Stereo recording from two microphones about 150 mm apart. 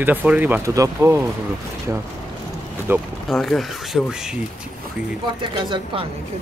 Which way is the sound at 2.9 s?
15° right (ahead or behind).